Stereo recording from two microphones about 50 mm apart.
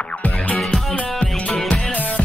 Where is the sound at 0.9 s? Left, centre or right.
Left.